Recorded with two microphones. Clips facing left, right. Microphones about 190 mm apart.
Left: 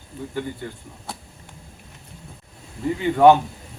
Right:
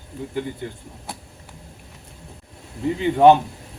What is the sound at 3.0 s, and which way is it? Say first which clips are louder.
Speech: even; 20° right (ahead or behind).